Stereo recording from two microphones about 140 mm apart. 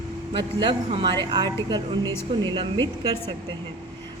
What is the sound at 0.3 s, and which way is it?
A woman's voice, 35° right (ahead or behind).